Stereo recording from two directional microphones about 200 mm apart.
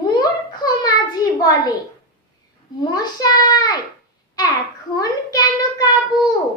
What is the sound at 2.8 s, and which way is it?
Speech, 20° left (ahead or behind).